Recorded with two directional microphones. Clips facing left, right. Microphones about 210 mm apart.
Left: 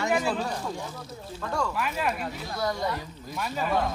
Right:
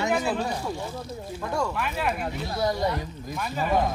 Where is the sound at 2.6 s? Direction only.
20° right (ahead or behind).